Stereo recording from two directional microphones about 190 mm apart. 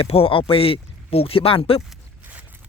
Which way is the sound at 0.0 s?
30° left (ahead or behind).